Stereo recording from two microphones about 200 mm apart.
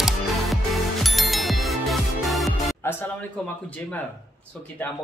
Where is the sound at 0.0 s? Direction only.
Centre (ahead or behind).